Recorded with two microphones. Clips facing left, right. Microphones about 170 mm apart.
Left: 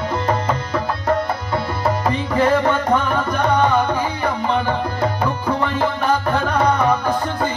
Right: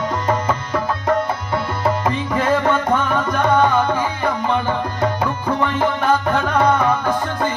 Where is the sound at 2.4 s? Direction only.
15° left (ahead or behind).